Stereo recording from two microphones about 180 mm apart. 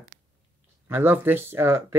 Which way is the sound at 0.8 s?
10° right (ahead or behind).